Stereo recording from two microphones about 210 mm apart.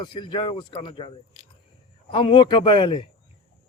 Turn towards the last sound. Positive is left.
turn(degrees=25)  # may be behind; listen again after turning